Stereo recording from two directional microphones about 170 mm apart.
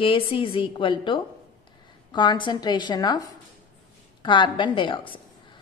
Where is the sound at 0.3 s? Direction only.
30° left (ahead or behind).